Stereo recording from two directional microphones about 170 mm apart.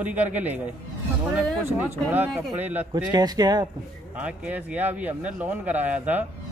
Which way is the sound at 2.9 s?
25° right (ahead or behind).